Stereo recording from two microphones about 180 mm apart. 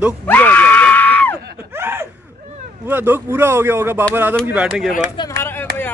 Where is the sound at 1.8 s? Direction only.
10° right (ahead or behind).